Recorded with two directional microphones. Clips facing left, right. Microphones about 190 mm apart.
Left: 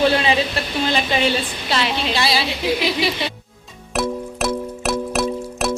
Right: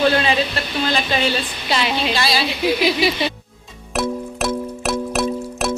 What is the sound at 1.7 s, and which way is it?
Speech, centre (ahead or behind).